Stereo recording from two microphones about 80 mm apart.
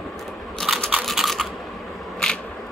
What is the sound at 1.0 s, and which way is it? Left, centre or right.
Computer keyboard, centre.